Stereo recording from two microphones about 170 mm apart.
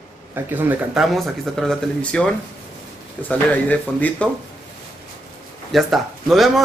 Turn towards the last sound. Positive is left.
turn(degrees=0)  # may be behind; listen again after turning